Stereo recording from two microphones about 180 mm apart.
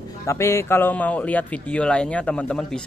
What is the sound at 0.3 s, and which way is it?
A man's voice, 15° left (ahead or behind).